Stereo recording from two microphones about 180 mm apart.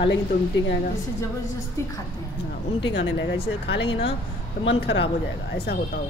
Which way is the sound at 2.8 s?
90° left.